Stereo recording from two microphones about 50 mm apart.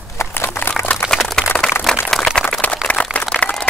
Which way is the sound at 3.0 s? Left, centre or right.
Left.